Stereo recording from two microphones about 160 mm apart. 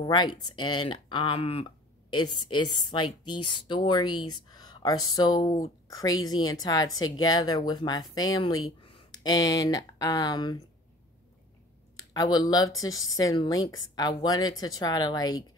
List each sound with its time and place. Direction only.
0.0 s speech: 25° left (ahead or behind)
12.0 s speech: 25° left (ahead or behind)